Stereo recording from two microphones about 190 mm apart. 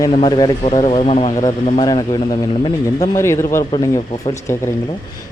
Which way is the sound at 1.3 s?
20° left (ahead or behind).